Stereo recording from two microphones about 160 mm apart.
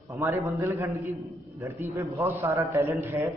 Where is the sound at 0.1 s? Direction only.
20° right (ahead or behind).